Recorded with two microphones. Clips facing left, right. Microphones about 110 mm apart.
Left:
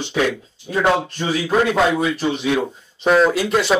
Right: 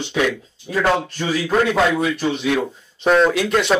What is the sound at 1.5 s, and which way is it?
Speech, 5° left (ahead or behind).